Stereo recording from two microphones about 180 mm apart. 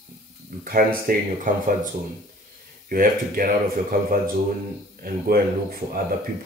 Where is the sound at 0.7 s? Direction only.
55° right (ahead or behind).